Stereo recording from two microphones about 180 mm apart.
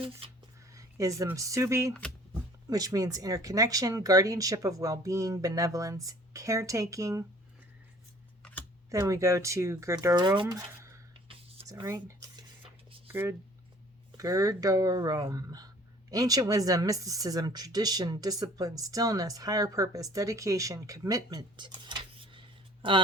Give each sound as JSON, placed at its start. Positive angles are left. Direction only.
{"t": 0.7, "sound": "speech", "side_deg": -15}
{"t": 1.9, "sound": "speech", "side_deg": 5}
{"t": 2.6, "sound": "speech", "side_deg": -20}
{"t": 8.4, "sound": "computer keyboard", "side_deg": 5}
{"t": 8.9, "sound": "speech", "side_deg": -15}
{"t": 10.5, "sound": "a sound", "side_deg": -15}
{"t": 14.2, "sound": "speech", "side_deg": -20}